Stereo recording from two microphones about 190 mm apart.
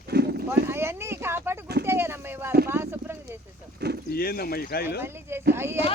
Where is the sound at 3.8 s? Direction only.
60° right (ahead or behind).